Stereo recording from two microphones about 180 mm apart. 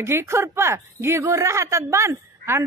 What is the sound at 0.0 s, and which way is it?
A woman's voice, 15° right (ahead or behind).